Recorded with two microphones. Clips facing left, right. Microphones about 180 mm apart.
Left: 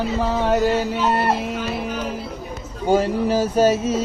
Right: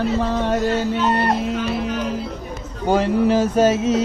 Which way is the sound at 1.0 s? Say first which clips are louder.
Even; 5° left (ahead or behind).